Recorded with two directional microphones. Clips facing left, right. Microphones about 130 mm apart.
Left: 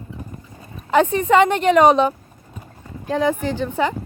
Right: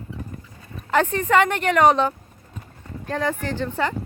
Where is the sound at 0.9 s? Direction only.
15° left (ahead or behind).